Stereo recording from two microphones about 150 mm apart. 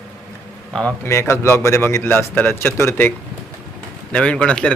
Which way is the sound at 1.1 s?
20° left (ahead or behind).